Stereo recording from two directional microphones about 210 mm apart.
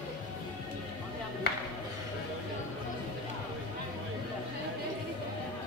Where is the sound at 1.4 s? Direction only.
50° left (ahead or behind).